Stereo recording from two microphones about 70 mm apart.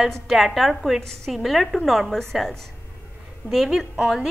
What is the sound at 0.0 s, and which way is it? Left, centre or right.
A woman's voice, centre.